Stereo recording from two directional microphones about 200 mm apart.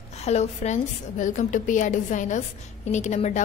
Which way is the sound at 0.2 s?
35° left (ahead or behind).